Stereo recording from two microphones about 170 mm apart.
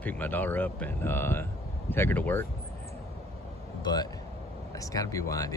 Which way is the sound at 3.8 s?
25° left (ahead or behind).